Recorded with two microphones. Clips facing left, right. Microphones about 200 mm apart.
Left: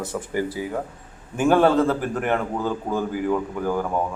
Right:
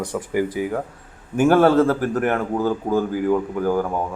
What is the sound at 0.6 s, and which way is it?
A man's voice, 15° right (ahead or behind).